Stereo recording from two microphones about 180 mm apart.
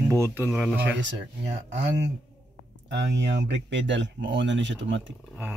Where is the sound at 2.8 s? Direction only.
80° right.